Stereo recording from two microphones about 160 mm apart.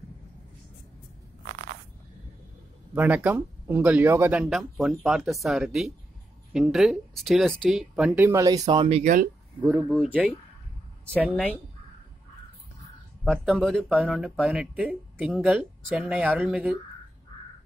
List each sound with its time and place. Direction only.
2.9 s speech: 10° right (ahead or behind)
9.0 s speech: 60° right (ahead or behind)
9.6 s speech: 15° right (ahead or behind)
13.2 s speech: 5° left (ahead or behind)